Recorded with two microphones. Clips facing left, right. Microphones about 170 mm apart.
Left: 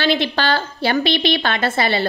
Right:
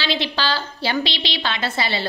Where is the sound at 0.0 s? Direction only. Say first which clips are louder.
Left 5 dB; 50° left (ahead or behind).